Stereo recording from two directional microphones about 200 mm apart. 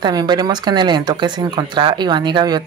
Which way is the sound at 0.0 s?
20° right (ahead or behind).